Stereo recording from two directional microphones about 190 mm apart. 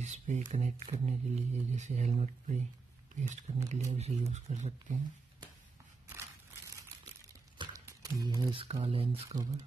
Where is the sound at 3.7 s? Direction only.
35° right (ahead or behind).